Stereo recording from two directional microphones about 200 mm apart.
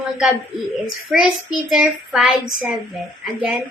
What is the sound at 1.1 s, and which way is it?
A child's voice, centre (ahead or behind).